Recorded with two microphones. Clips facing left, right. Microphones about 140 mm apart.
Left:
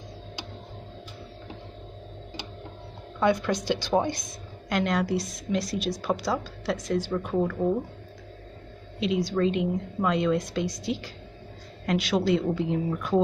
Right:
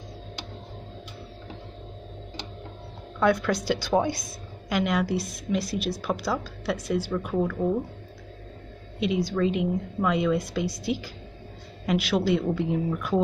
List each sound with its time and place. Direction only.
3.2 s a woman's voice: centre (ahead or behind)
9.0 s a woman's voice: centre (ahead or behind)